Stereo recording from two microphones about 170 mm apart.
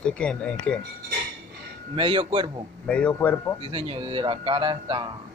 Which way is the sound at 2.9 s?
5° left (ahead or behind).